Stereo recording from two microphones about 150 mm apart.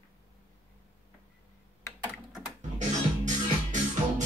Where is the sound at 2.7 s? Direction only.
55° right (ahead or behind).